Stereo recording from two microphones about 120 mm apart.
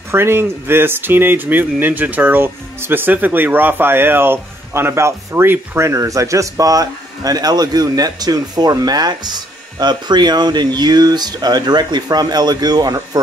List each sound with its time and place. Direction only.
0.1 s speech: 20° right (ahead or behind)